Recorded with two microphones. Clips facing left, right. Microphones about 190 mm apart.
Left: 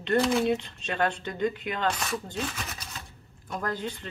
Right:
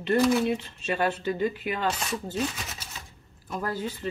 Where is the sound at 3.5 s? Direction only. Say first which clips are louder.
Right 1 dB; 5° right (ahead or behind).